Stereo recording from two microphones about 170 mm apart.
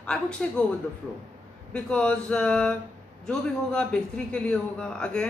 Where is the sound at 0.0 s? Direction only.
5° left (ahead or behind).